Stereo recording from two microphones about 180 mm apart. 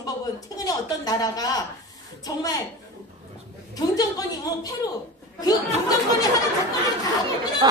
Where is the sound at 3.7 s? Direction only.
20° left (ahead or behind).